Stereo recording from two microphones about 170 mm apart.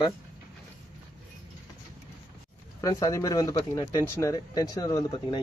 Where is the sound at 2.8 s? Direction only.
20° left (ahead or behind).